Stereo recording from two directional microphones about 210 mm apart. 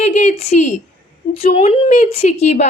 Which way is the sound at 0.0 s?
30° left (ahead or behind).